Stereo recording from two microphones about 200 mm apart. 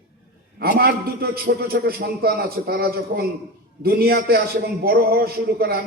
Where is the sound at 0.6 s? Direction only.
50° right (ahead or behind).